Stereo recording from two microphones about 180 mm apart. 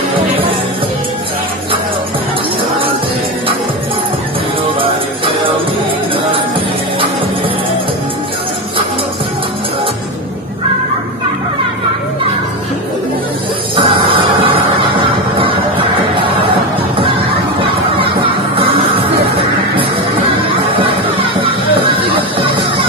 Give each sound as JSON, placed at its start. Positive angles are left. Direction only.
{"t": 4.7, "sound": "music", "side_deg": -30}
{"t": 13.7, "sound": "music", "side_deg": -30}
{"t": 17.9, "sound": "music", "side_deg": -30}
{"t": 20.4, "sound": "music", "side_deg": -30}